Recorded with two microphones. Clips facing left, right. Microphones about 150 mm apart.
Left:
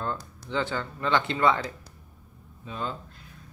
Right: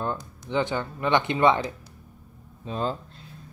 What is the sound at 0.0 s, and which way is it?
Speech, 20° right (ahead or behind).